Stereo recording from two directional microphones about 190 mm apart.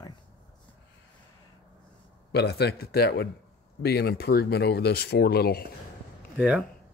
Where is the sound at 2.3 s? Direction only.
60° left (ahead or behind).